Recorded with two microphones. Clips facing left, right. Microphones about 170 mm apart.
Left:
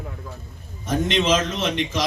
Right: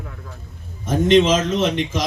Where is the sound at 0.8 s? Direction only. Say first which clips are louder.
Right 7 dB; 45° right (ahead or behind).